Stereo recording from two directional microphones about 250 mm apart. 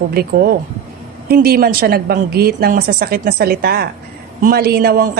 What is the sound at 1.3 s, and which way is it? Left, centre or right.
A man's voice, right.